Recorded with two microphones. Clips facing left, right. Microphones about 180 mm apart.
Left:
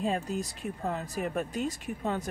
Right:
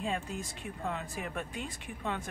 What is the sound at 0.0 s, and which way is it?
Speech, 40° left (ahead or behind).